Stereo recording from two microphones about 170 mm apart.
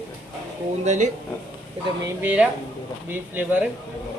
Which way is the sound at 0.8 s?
45° right (ahead or behind).